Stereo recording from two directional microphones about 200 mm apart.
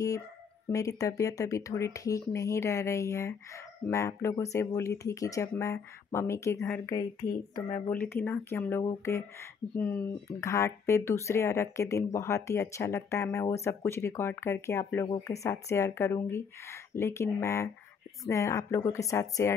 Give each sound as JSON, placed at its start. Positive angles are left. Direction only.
{"t": 0.7, "sound": "speech", "side_deg": 15}
{"t": 7.6, "sound": "speech", "side_deg": 35}
{"t": 8.0, "sound": "speech", "side_deg": 10}